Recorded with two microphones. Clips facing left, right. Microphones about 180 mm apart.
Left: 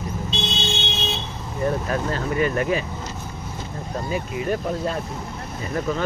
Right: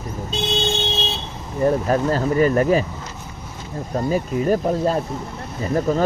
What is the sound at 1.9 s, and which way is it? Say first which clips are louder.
Speech: right 6 dB; 40° right (ahead or behind).